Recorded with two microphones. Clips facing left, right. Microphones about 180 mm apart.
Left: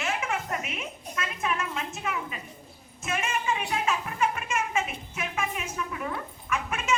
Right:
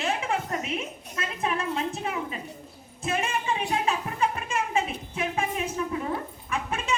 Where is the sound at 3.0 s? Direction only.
35° right (ahead or behind).